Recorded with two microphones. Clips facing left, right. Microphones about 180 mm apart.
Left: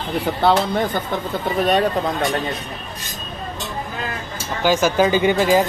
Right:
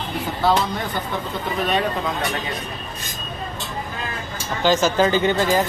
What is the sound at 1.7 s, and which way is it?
Speech, 35° left (ahead or behind).